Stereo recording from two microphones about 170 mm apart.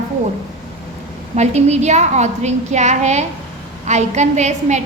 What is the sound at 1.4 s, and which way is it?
A woman's voice, 40° right (ahead or behind).